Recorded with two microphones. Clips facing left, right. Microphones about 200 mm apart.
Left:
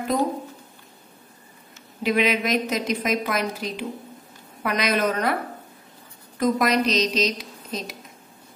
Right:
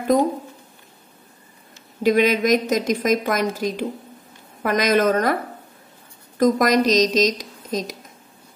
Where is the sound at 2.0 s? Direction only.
45° right (ahead or behind).